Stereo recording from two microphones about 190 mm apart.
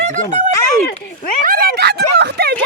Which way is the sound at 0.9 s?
45° left (ahead or behind).